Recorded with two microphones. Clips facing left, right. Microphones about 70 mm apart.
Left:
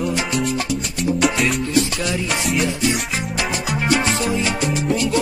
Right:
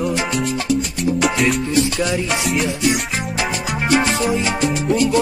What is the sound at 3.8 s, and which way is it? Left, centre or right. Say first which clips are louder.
Music: right 3 dB; centre.